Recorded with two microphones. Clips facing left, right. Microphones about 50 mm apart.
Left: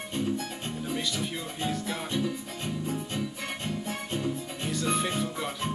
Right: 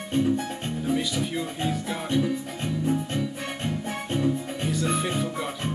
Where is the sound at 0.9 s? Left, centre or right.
Centre.